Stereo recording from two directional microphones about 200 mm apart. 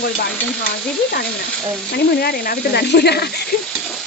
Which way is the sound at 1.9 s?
50° left (ahead or behind).